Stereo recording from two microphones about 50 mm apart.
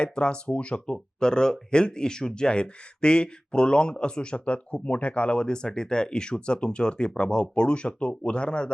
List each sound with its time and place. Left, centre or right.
0.0 s speech: centre